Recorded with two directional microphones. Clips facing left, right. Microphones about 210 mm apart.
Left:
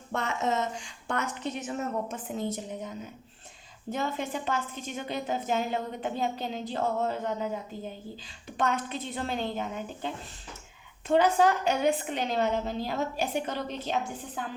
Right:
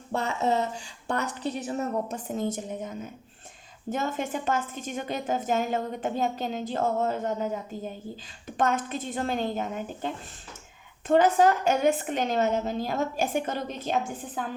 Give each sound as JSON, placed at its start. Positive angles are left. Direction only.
{"t": 0.1, "sound": "a woman's voice", "side_deg": -35}
{"t": 3.9, "sound": "a woman's voice", "side_deg": -45}
{"t": 8.5, "sound": "a woman's voice", "side_deg": -45}
{"t": 11.1, "sound": "a woman's voice", "side_deg": -45}